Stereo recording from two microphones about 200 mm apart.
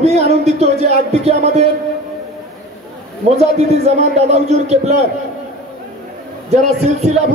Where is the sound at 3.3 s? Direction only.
35° right (ahead or behind).